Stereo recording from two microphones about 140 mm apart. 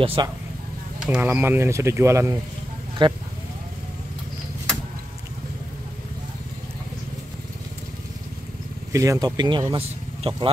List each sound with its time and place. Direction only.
0.0 s speech: 40° right (ahead or behind)
0.9 s speech: 5° right (ahead or behind)
3.0 s speech: 35° right (ahead or behind)
8.9 s speech: 20° right (ahead or behind); by 10.5 s 40° right (ahead or behind)